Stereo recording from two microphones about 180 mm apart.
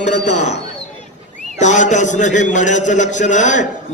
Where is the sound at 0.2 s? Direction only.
40° left (ahead or behind).